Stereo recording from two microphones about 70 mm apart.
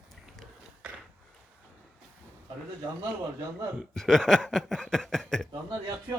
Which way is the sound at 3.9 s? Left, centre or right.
Centre.